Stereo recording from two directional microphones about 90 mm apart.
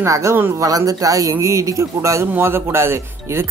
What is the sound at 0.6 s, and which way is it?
Speech, 40° right (ahead or behind).